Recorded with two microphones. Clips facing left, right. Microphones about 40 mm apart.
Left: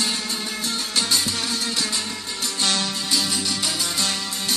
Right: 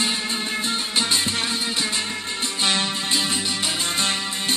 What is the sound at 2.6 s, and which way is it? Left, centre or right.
Music, right.